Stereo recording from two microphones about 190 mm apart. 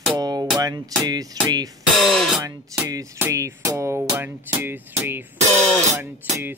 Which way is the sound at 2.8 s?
15° right (ahead or behind).